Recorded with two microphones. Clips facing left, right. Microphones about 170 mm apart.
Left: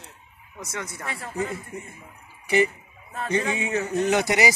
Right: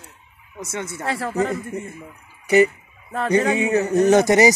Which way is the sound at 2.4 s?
40° right (ahead or behind).